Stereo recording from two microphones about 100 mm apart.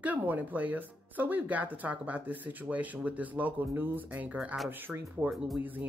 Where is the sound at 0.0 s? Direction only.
15° right (ahead or behind).